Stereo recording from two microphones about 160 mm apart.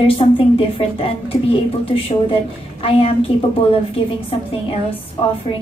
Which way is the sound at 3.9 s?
35° left (ahead or behind).